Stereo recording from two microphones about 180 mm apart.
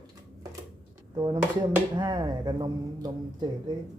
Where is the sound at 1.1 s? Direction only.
20° right (ahead or behind).